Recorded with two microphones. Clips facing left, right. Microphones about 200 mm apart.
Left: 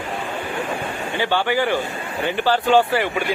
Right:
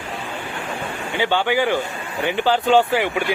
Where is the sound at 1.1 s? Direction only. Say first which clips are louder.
Right 1 dB; 15° right (ahead or behind).